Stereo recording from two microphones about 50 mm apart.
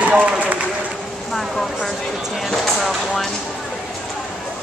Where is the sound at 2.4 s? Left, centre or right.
Centre.